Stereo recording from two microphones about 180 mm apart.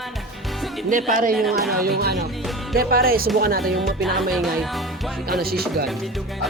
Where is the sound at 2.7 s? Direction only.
55° right (ahead or behind).